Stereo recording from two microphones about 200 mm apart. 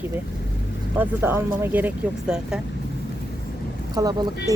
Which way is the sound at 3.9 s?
20° right (ahead or behind).